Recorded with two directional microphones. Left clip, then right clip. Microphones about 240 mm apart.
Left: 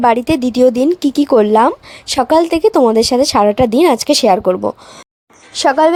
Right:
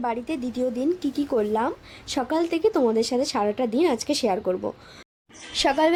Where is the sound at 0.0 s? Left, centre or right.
Left.